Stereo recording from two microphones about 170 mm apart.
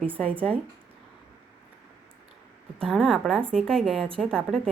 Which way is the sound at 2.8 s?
Centre (ahead or behind).